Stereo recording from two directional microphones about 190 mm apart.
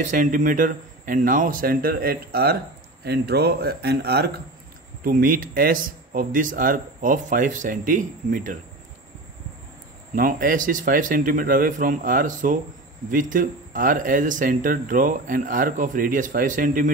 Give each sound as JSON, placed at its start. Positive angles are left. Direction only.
{"t": 0.0, "sound": "speech", "side_deg": -45}
{"t": 10.1, "sound": "speech", "side_deg": -45}